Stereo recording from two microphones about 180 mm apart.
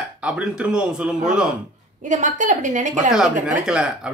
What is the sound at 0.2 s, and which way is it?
Speech, 5° right (ahead or behind).